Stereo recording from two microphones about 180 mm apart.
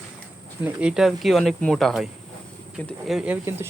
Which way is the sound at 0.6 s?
10° right (ahead or behind).